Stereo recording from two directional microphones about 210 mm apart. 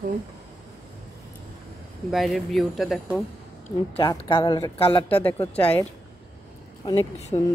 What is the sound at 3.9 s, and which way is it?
Speech, 20° left (ahead or behind).